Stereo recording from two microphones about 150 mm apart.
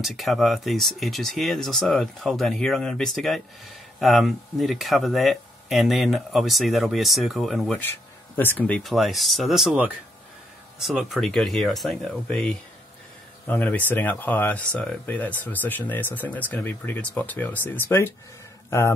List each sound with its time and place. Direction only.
0.0 s speech: centre (ahead or behind)
7.8 s speech: 15° left (ahead or behind)